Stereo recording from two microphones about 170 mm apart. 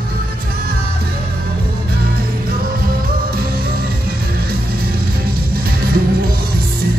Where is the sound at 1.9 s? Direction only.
65° right (ahead or behind).